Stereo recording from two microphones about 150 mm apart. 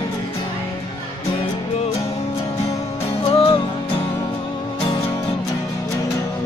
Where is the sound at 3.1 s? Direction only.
40° left (ahead or behind).